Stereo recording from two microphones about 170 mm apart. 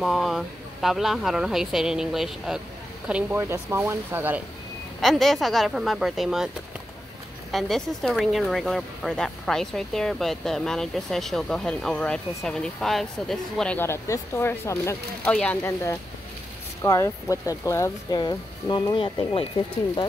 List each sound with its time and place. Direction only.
0.0 s speech: centre (ahead or behind)
5.0 s speech: centre (ahead or behind)
7.5 s speech: centre (ahead or behind); by 19.4 s 30° left (ahead or behind)